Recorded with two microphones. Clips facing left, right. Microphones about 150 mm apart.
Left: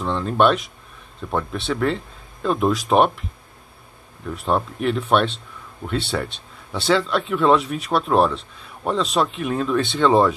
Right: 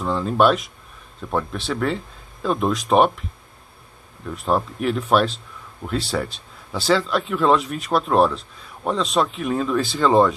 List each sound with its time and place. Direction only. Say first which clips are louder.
0.0 s speech: even; centre (ahead or behind)
4.3 s speech: even; centre (ahead or behind)